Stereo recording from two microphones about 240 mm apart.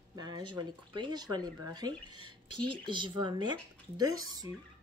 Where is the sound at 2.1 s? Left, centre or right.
Right.